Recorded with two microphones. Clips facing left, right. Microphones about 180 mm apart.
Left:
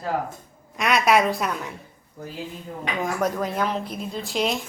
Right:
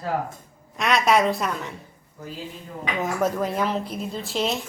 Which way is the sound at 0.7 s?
Centre (ahead or behind).